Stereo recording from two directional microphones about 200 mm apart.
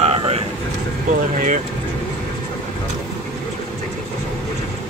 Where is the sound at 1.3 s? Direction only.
40° right (ahead or behind).